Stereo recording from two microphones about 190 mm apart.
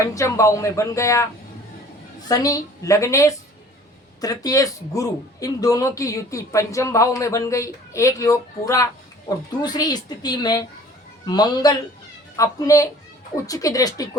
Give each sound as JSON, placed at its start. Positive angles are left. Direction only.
{"t": 0.0, "sound": "speech", "side_deg": 15}